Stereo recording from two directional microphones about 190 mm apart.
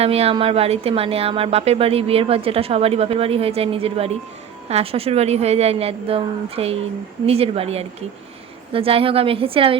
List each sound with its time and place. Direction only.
0.0 s a woman's voice: 30° right (ahead or behind)